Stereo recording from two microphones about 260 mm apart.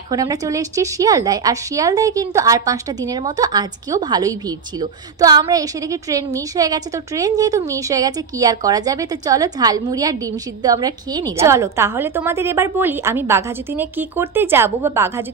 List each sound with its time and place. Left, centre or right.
0.1 s a woman's voice: centre